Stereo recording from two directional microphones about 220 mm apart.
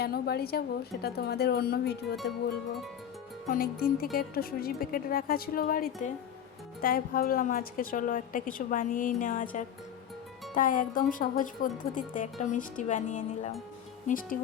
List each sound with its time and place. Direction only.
0.0 s speech: 45° left (ahead or behind)
3.5 s speech: 40° left (ahead or behind)